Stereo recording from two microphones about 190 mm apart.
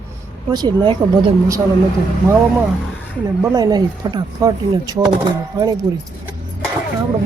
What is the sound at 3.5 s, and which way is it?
Speech, 20° right (ahead or behind).